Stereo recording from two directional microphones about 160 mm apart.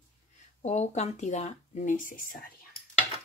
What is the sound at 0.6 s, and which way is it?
Speech, 45° left (ahead or behind).